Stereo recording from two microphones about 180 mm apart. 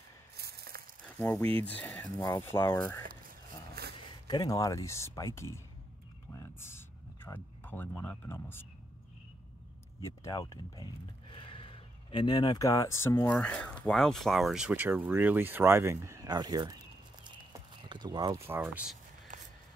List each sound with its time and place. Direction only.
0.4 s a sound: 60° right (ahead or behind)
1.0 s speech: 10° left (ahead or behind)
4.3 s speech: 20° left (ahead or behind)
10.0 s speech: 15° left (ahead or behind); by 18.4 s 25° right (ahead or behind)
18.5 s speech: 10° right (ahead or behind)